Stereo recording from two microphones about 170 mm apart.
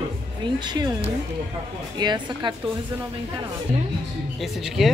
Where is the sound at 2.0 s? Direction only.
25° right (ahead or behind).